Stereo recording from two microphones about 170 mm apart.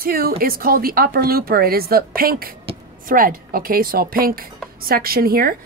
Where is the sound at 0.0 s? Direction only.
60° right (ahead or behind).